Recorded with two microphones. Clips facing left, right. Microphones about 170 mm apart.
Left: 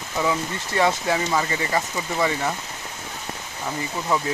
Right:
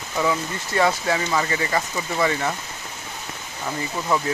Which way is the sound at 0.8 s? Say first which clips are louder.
Even; 20° left (ahead or behind).